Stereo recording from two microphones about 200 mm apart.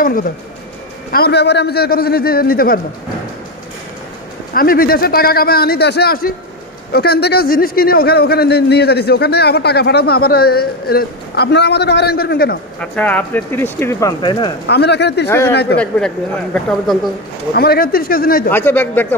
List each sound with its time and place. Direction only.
0.0 s a man's voice: 45° left (ahead or behind)
4.6 s a man's voice: 45° left (ahead or behind)
12.8 s speech: 5° left (ahead or behind)
14.7 s speech: 55° left (ahead or behind)
15.2 s speech: 15° left (ahead or behind)
15.5 s speech: 55° left (ahead or behind)
16.5 s speech: centre (ahead or behind)
17.6 s a man's voice: 50° left (ahead or behind)
18.5 s speech: 10° left (ahead or behind)